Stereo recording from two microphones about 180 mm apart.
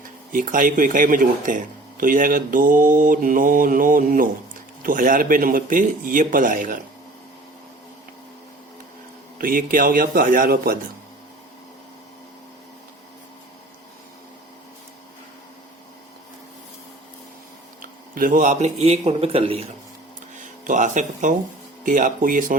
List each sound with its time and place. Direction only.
0.3 s speech: 50° right (ahead or behind)
9.4 s speech: 50° right (ahead or behind)
18.1 s a man's voice: 50° right (ahead or behind); by 19.6 s 35° right (ahead or behind)
20.3 s speech: 45° right (ahead or behind)